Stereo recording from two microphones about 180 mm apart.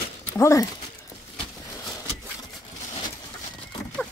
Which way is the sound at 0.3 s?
15° left (ahead or behind).